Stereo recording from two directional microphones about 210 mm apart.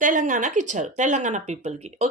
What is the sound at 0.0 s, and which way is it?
A woman's voice, 35° right (ahead or behind).